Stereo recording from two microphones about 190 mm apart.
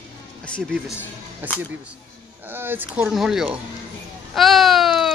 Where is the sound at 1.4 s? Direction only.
10° right (ahead or behind).